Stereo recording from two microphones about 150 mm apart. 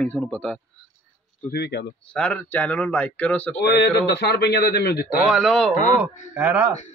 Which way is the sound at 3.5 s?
90° left.